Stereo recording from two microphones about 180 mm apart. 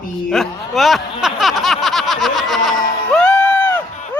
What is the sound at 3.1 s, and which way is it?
Music, 10° left (ahead or behind).